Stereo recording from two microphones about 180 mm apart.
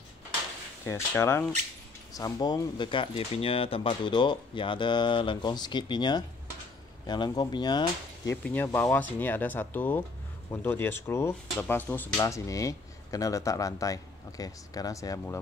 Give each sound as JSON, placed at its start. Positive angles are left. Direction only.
{"t": 0.8, "sound": "speech", "side_deg": 15}